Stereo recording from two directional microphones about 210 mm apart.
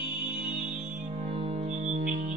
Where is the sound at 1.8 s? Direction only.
35° right (ahead or behind).